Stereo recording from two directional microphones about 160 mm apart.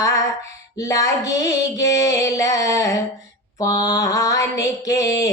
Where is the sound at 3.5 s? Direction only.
20° left (ahead or behind).